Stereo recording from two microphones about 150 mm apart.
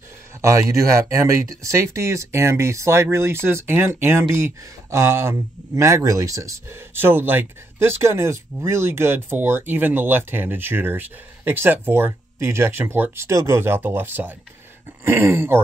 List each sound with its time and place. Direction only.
0.4 s speech: 20° right (ahead or behind)